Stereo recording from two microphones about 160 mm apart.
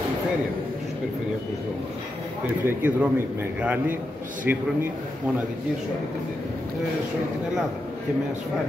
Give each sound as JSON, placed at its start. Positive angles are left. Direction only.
{"t": 2.6, "sound": "speech", "side_deg": -10}